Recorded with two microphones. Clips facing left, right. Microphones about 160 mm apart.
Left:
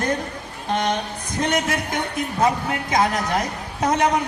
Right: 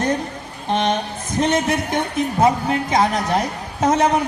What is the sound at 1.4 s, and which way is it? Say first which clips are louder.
A woman's voice: right 4 dB; 25° right (ahead or behind).